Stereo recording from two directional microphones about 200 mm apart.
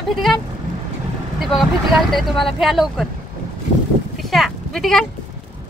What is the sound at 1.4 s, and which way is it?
Speech, centre (ahead or behind).